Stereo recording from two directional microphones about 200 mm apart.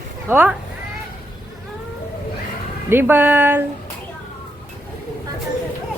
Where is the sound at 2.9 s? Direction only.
10° right (ahead or behind).